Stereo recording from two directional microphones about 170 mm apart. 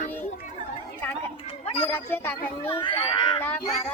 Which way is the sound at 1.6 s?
35° left (ahead or behind).